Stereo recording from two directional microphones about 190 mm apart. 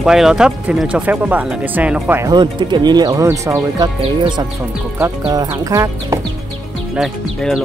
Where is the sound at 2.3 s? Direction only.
25° right (ahead or behind).